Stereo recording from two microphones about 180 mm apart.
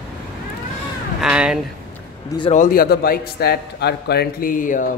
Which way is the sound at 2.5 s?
50° left (ahead or behind).